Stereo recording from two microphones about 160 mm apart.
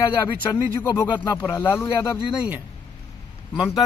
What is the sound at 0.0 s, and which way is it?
Speech, 20° left (ahead or behind).